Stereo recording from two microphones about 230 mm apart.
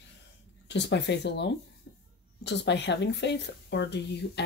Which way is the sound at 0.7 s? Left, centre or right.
Left.